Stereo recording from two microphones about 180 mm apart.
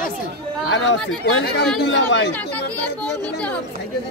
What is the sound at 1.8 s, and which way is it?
Speech, 80° left.